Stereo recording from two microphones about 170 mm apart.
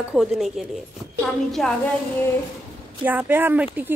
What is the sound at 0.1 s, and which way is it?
Speech, centre (ahead or behind).